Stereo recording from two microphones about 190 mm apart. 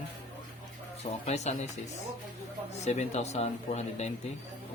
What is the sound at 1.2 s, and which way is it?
Speech, 35° left (ahead or behind).